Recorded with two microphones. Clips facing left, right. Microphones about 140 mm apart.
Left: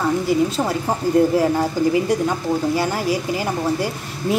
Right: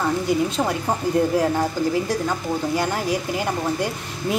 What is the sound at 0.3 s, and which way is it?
Speech, 5° left (ahead or behind).